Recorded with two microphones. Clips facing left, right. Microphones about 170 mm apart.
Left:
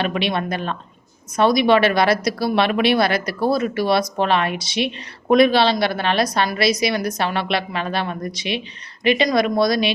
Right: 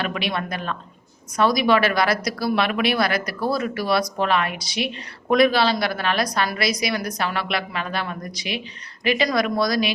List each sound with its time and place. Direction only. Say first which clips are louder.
0.0 s a woman's voice: left 4 dB; 25° left (ahead or behind)